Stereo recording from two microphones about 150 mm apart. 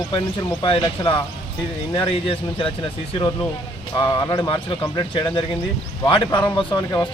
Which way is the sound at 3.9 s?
30° left (ahead or behind).